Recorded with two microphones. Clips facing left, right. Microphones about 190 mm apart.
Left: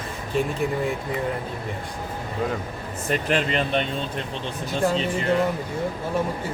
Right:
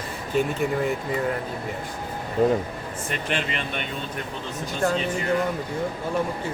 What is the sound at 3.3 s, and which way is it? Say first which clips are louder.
Speech: left 6 dB; 40° left (ahead or behind).